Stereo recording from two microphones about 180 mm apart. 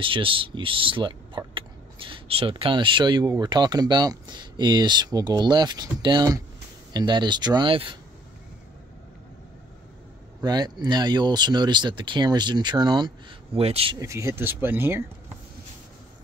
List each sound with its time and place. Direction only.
0.0 s speech: 30° right (ahead or behind)
10.4 s speech: 20° right (ahead or behind)
13.9 s speech: 15° right (ahead or behind)